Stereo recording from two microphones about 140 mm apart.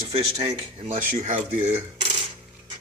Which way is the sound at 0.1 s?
45° right (ahead or behind).